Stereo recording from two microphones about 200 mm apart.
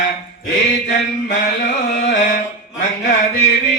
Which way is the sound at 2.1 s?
40° left (ahead or behind).